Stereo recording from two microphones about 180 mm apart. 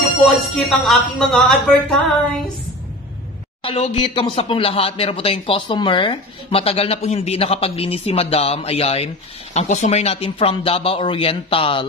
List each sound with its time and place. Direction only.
0.2 s speech: centre (ahead or behind)
3.6 s speech: 35° left (ahead or behind)